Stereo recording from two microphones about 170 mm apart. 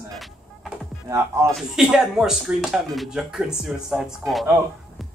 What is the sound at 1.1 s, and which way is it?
Speech, 15° right (ahead or behind).